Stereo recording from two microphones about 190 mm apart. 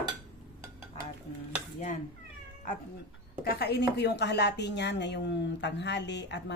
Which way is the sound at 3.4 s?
55° left (ahead or behind).